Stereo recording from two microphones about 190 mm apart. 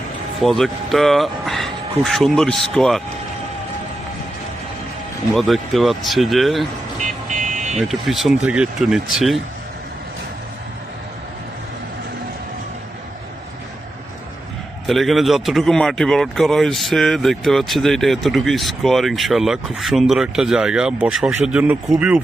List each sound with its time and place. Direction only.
0.4 s speech: centre (ahead or behind)
5.3 s speech: centre (ahead or behind)
7.3 s vehicle: 40° right (ahead or behind)
7.8 s speech: centre (ahead or behind)
14.8 s speech: centre (ahead or behind)